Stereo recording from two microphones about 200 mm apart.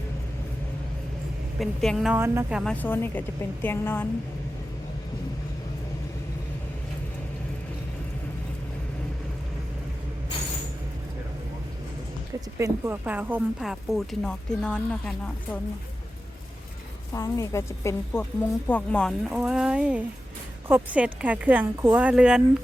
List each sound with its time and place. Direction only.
1.5 s speech: centre (ahead or behind)
2.1 s speech: 10° right (ahead or behind)
2.7 s a woman's voice: 10° left (ahead or behind)
12.5 s speech: 10° right (ahead or behind); by 15.1 s 5° left (ahead or behind)
17.2 s a woman's voice: 15° left (ahead or behind); by 22.4 s 5° right (ahead or behind)